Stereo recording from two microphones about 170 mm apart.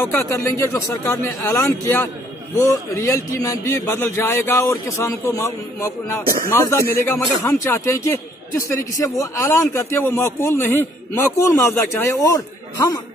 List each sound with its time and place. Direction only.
0.0 s a man's voice: 15° left (ahead or behind)